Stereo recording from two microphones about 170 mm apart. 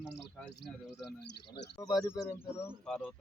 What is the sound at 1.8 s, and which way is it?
Speech, 20° left (ahead or behind).